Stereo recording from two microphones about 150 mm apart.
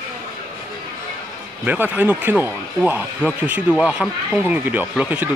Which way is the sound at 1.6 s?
10° right (ahead or behind).